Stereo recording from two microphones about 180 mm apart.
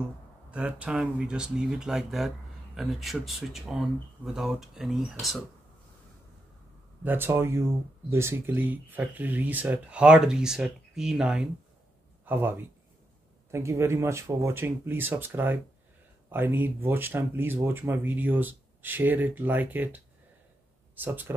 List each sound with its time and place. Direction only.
0.5 s speech: 5° right (ahead or behind)
7.0 s speech: 10° right (ahead or behind)